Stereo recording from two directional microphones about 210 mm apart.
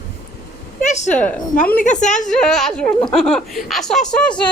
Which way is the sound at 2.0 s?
35° left (ahead or behind).